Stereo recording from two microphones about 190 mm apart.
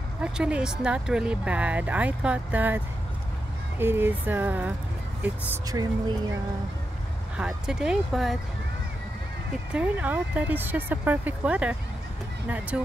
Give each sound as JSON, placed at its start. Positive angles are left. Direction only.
{"t": 0.2, "sound": "speech", "side_deg": -5}
{"t": 7.3, "sound": "speech", "side_deg": -5}
{"t": 9.7, "sound": "speech", "side_deg": -10}